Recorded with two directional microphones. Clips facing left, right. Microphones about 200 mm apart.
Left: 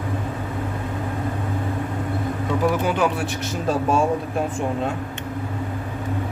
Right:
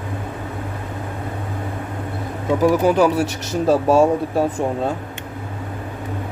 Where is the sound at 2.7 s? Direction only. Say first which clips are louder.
Right 7 dB; 40° right (ahead or behind).